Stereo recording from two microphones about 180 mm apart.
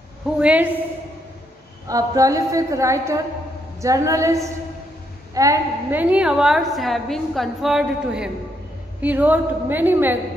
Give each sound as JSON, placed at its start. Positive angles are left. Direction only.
{"t": 0.4, "sound": "a woman's voice", "side_deg": -10}
{"t": 1.9, "sound": "a woman's voice", "side_deg": -20}